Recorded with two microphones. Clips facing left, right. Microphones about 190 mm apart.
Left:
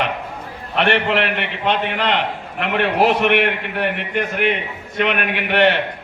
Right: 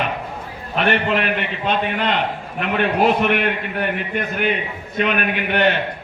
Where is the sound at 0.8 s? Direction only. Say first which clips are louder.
Left 1 dB; 75° left (ahead or behind).